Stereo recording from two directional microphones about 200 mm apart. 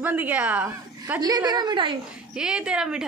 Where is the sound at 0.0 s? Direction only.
10° right (ahead or behind).